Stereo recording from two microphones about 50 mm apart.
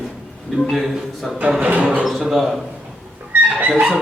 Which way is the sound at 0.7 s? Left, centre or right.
Centre.